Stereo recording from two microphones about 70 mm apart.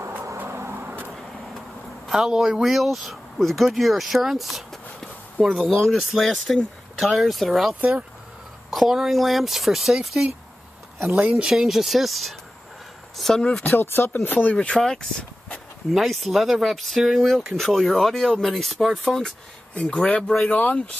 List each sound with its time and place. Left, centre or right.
0.0 s vehicle: right
0.8 s vehicle: right
2.0 s speech: centre
11.0 s speech: right; by 12.4 s centre
13.2 s speech: centre
13.7 s speech: left
14.7 s speech: centre
15.9 s speech: centre
19.7 s speech: centre